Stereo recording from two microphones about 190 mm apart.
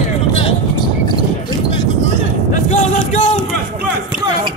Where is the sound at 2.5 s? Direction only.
40° left (ahead or behind).